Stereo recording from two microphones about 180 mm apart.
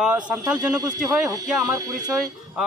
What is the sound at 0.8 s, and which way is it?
Speech, 20° right (ahead or behind).